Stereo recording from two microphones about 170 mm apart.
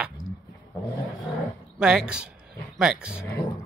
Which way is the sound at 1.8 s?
5° right (ahead or behind).